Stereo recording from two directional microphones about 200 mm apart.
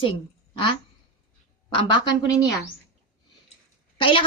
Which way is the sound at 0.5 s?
25° left (ahead or behind).